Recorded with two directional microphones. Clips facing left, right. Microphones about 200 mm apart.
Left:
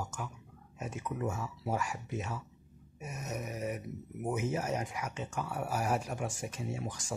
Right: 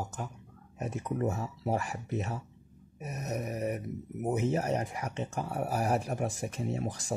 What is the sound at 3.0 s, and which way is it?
Speech, 35° right (ahead or behind).